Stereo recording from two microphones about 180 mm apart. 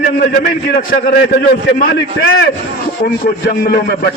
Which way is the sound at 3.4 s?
60° left (ahead or behind).